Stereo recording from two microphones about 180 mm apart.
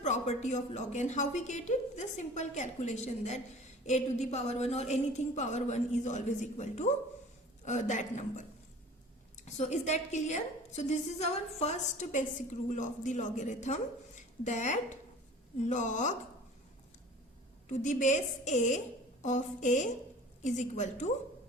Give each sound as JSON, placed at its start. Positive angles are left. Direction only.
{"t": 0.0, "sound": "a woman's voice", "side_deg": 40}
{"t": 9.6, "sound": "a woman's voice", "side_deg": 40}
{"t": 17.7, "sound": "a woman's voice", "side_deg": 40}